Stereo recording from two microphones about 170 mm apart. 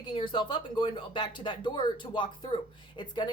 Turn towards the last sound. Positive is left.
turn(degrees=25)  # may be behind; listen again after turning